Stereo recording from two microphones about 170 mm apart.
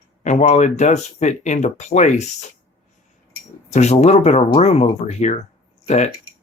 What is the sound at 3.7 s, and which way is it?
Speech, 40° left (ahead or behind).